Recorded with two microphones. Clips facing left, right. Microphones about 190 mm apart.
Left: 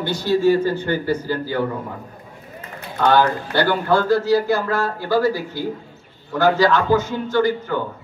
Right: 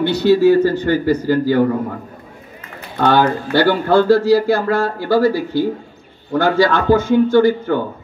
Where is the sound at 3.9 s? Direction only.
30° right (ahead or behind).